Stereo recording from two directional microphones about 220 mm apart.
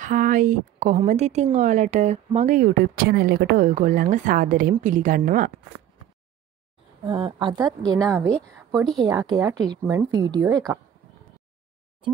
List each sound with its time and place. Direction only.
0.0 s speech: 35° right (ahead or behind)
7.1 s a woman's voice: 20° right (ahead or behind)